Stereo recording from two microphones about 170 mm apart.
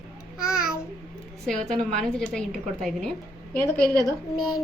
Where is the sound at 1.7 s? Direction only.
5° left (ahead or behind).